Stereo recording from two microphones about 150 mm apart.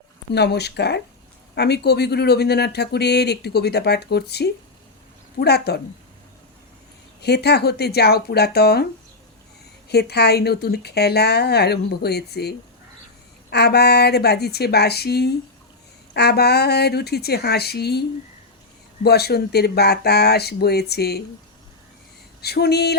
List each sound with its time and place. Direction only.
0.3 s speech: 90° left
7.2 s speech: 90° left
9.9 s speech: 90° left
19.0 s speech: 90° left
22.4 s speech: 90° left